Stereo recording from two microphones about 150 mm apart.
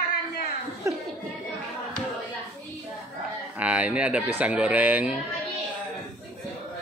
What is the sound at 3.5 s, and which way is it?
Speech, 10° right (ahead or behind).